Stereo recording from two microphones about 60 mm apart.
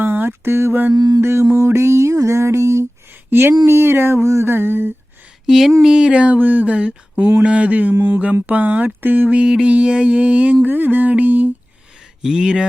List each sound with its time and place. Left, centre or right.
0.0 s mantra: right
0.9 s mantra: right
1.2 s music: right
3.2 s a sound: right
5.5 s a sound: centre
5.8 s music: centre; by 6.7 s right
6.7 s a sound: centre
7.4 s music: right
9.4 s music: centre
12.2 s speech: centre